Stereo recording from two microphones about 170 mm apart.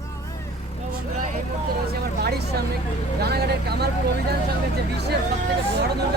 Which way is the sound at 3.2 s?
70° right (ahead or behind).